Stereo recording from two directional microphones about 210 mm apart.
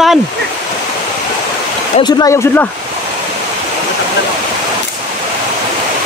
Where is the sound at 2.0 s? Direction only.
15° left (ahead or behind).